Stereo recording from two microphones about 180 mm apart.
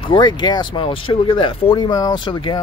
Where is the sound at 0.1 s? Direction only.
25° left (ahead or behind).